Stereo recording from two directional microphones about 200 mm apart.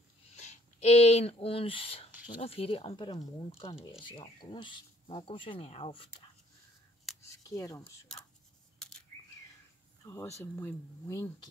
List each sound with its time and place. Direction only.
0.4 s speech: 35° left (ahead or behind)
7.2 s speech: 15° left (ahead or behind)
10.0 s speech: 15° left (ahead or behind)